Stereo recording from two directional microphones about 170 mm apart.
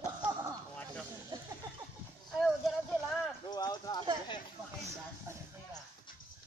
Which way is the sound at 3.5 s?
25° left (ahead or behind).